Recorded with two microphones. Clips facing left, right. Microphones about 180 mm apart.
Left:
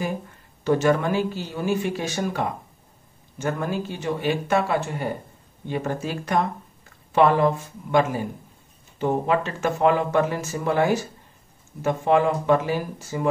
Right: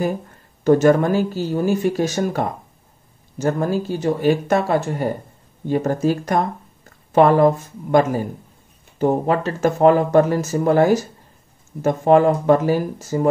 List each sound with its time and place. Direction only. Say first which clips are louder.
0.7 s speech: right 6 dB; 45° right (ahead or behind)